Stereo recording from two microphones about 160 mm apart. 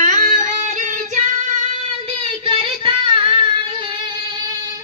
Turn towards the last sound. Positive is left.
turn(degrees=-35)  # may be behind; listen again after turning